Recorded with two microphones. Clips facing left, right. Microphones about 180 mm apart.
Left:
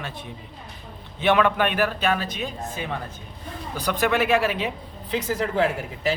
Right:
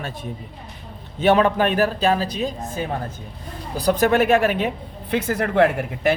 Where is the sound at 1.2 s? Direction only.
40° right (ahead or behind); by 6.1 s 60° right (ahead or behind).